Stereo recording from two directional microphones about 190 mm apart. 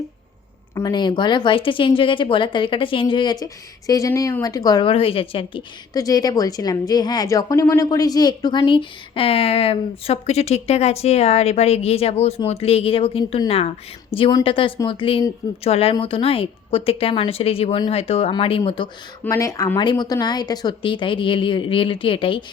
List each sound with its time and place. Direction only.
0.8 s speech: 25° left (ahead or behind)
19.2 s speech: 15° left (ahead or behind)